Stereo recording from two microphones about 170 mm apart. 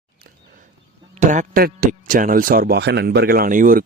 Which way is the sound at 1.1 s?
45° right (ahead or behind).